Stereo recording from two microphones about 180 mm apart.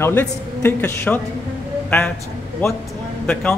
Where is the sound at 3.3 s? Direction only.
5° left (ahead or behind).